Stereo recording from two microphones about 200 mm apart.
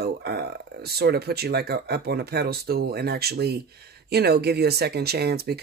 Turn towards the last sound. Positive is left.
turn(degrees=-55)  # may be behind; listen again after turning